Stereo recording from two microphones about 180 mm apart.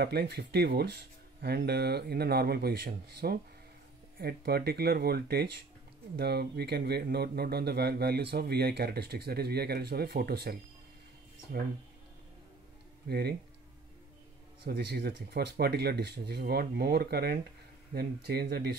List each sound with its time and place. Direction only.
0.0 s speech: 60° right (ahead or behind)
13.1 s speech: 65° right (ahead or behind)
14.6 s speech: 65° right (ahead or behind)